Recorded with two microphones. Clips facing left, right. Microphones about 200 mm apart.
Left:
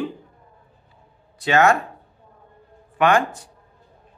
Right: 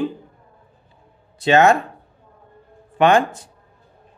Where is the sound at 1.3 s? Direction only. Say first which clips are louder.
Right 3 dB; 25° right (ahead or behind).